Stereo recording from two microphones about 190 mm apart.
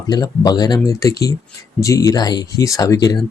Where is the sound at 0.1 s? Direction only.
20° left (ahead or behind).